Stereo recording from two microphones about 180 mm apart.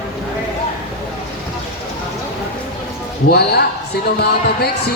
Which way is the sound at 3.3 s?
60° left (ahead or behind).